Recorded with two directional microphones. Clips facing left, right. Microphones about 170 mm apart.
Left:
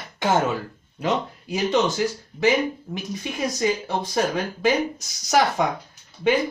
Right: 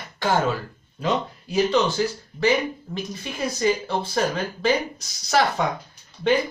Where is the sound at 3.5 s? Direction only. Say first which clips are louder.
Right 2 dB; 15° left (ahead or behind).